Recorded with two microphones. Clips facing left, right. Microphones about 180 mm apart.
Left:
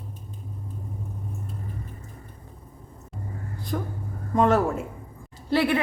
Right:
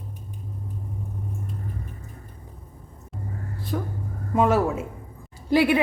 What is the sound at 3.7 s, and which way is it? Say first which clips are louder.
A woman's voice: right 1 dB; centre (ahead or behind).